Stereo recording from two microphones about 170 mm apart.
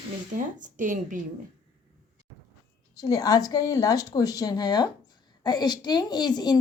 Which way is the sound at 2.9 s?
20° left (ahead or behind).